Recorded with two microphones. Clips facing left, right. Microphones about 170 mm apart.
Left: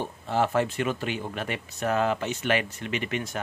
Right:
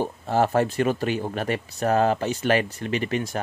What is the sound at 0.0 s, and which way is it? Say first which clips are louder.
Speech: right 4 dB; 40° right (ahead or behind).